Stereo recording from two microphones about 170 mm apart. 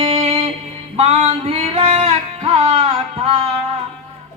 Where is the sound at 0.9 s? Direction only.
35° right (ahead or behind).